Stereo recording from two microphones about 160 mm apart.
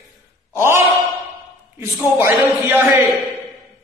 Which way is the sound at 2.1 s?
15° right (ahead or behind).